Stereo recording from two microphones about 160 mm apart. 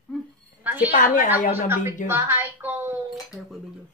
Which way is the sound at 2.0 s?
15° right (ahead or behind).